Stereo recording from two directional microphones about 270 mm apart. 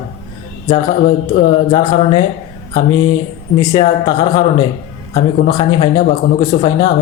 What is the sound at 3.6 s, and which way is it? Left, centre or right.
Speech, centre.